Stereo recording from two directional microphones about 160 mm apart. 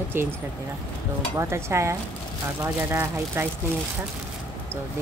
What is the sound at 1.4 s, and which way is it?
Speech, 15° right (ahead or behind).